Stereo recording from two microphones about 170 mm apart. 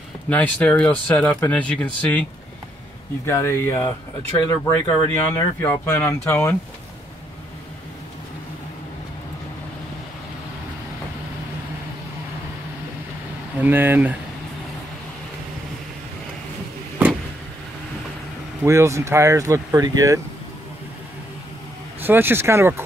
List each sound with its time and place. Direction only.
0.3 s speech: 10° left (ahead or behind)
3.3 s speech: 15° left (ahead or behind)
13.6 s speech: 10° right (ahead or behind)
18.6 s speech: 15° right (ahead or behind)
22.0 s speech: 10° right (ahead or behind)